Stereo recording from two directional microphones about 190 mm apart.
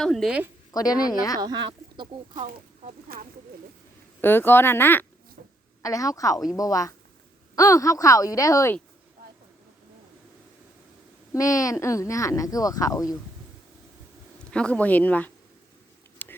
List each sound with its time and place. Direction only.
0.0 s a woman's voice: centre (ahead or behind)
0.7 s speech: 20° left (ahead or behind)
1.4 s speech: 20° right (ahead or behind)
2.3 s speech: 40° right (ahead or behind)
4.2 s speech: 10° left (ahead or behind)
5.4 s a sound: 45° right (ahead or behind)
5.8 s speech: 15° left (ahead or behind)
11.3 s speech: 15° left (ahead or behind)
14.5 s speech: 5° left (ahead or behind)
16.2 s whispering: 10° left (ahead or behind)